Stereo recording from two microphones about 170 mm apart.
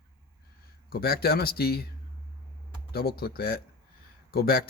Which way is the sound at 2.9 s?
65° left (ahead or behind).